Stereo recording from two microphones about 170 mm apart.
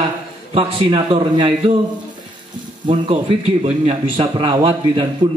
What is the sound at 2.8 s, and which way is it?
A man's voice, 30° right (ahead or behind).